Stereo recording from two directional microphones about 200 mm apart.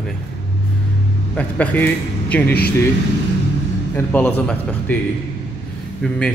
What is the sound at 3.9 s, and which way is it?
A man's voice, 10° left (ahead or behind).